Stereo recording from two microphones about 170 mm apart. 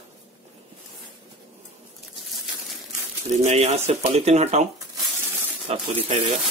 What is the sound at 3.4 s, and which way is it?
Speech, 40° right (ahead or behind).